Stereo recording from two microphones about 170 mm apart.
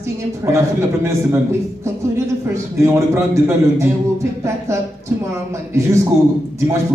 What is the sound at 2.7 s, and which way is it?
A man's voice, 15° right (ahead or behind).